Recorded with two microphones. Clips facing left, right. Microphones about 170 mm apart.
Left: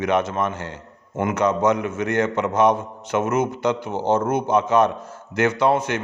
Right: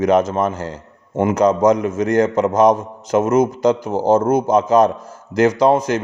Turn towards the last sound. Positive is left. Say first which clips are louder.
# right 5 dB
turn(degrees=-40)  # may be behind; listen again after turning